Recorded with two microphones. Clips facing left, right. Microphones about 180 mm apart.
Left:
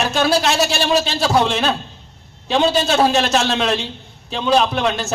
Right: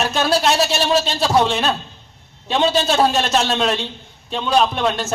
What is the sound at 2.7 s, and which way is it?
A man's voice, centre (ahead or behind).